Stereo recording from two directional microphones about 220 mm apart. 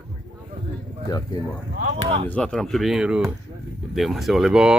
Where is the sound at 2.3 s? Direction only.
5° left (ahead or behind).